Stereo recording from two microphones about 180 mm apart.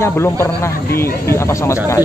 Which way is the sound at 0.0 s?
15° left (ahead or behind).